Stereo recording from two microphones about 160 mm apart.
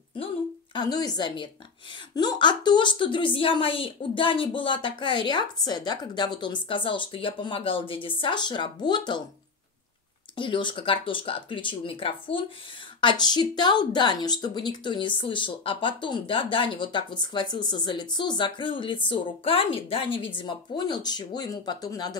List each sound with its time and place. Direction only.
0.7 s a woman's voice: 25° left (ahead or behind)
10.3 s a woman's voice: 30° left (ahead or behind)